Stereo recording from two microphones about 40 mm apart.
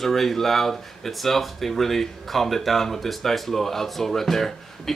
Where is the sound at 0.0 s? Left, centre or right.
Centre.